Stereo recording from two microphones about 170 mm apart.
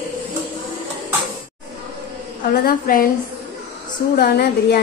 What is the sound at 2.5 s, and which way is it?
Speech, 55° left (ahead or behind).